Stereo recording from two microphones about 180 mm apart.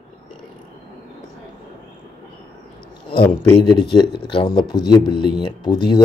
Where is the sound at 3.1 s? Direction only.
25° left (ahead or behind).